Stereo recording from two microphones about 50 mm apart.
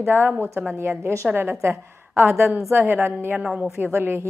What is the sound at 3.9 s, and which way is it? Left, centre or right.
Speech, right.